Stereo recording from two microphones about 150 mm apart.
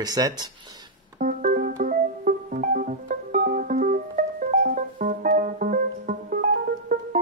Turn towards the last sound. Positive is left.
turn(degrees=-65)  # may be behind; listen again after turning